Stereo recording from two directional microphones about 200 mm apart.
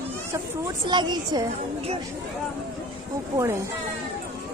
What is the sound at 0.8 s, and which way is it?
Speech, 20° right (ahead or behind).